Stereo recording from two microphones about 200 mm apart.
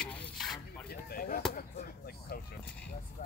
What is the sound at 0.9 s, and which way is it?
Chop, 50° left (ahead or behind).